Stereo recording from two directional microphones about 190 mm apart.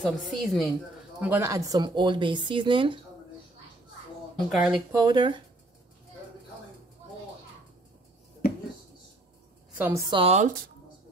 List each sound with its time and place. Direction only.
0.0 s speech: centre (ahead or behind)
1.2 s speech: 10° right (ahead or behind)
4.5 s speech: 5° right (ahead or behind)
4.9 s speech: 20° right (ahead or behind)
9.8 s a woman's voice: 10° right (ahead or behind)
10.0 s speech: 30° right (ahead or behind)